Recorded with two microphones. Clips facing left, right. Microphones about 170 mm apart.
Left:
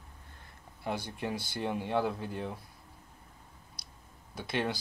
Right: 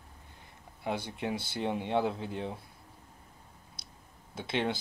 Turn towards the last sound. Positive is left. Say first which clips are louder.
# right 1 dB
turn(degrees=-25)  # may be behind; listen again after turning